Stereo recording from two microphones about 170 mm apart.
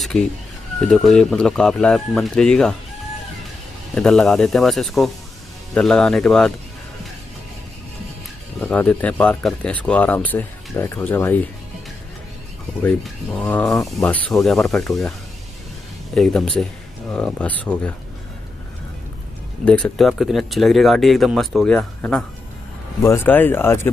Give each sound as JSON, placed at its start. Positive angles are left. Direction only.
{"t": 0.1, "sound": "speech", "side_deg": 0}
{"t": 3.9, "sound": "speech", "side_deg": 5}
{"t": 8.5, "sound": "speech", "side_deg": 5}
{"t": 13.0, "sound": "speech", "side_deg": 5}
{"t": 16.2, "sound": "speech", "side_deg": 0}
{"t": 19.6, "sound": "speech", "side_deg": 5}